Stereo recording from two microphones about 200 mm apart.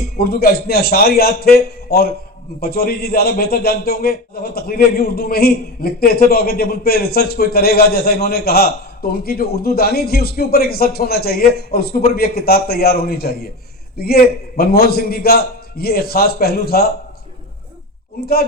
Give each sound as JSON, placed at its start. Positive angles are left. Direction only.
{"t": 0.2, "sound": "a man's voice", "side_deg": 50}